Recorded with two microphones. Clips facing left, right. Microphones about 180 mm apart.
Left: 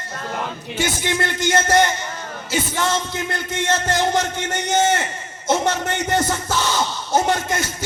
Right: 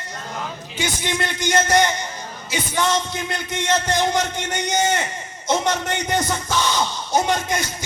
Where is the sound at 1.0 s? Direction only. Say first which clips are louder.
Left 2 dB; 15° right (ahead or behind).